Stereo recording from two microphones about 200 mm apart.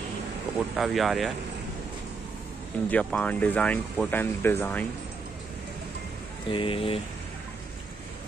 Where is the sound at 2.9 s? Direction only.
5° left (ahead or behind).